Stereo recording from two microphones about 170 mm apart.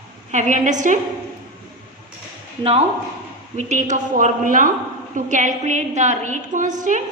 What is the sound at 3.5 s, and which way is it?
A woman's voice, 45° right (ahead or behind).